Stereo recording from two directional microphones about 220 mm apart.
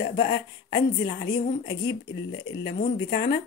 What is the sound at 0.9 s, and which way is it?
Speech, 20° left (ahead or behind).